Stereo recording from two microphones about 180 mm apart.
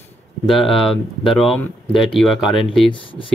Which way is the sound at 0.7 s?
Centre (ahead or behind).